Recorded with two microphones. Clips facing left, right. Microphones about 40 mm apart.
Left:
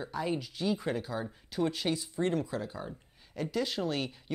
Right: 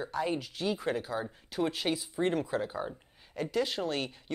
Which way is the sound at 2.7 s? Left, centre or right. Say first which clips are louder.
Right 4 dB; right.